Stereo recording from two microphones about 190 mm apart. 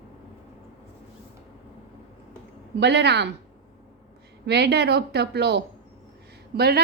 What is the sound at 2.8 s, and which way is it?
Speech, 65° right (ahead or behind).